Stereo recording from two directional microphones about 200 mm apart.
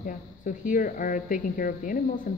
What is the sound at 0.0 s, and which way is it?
Speech, 45° left (ahead or behind).